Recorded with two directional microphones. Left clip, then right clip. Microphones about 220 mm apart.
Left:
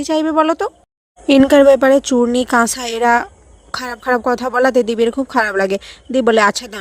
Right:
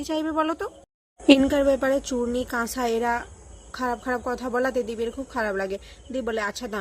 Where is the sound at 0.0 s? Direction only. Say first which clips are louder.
Left 11 dB; 35° left (ahead or behind).